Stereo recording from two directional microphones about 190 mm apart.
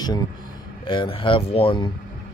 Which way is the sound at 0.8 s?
25° left (ahead or behind).